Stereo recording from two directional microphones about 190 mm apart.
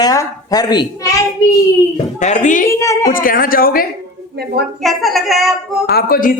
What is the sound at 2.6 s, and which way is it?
Speech, 15° left (ahead or behind).